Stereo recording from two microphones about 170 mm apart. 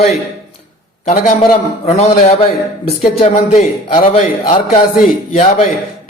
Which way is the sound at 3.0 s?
35° left (ahead or behind).